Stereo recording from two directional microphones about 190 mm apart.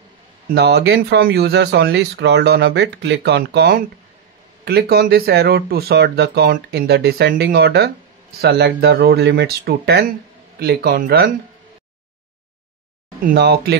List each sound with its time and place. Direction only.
0.5 s speech: 60° right (ahead or behind)
13.2 s speech: 55° right (ahead or behind)